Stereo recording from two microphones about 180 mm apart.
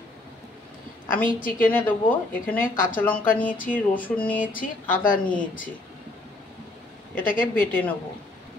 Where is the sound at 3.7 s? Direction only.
10° left (ahead or behind).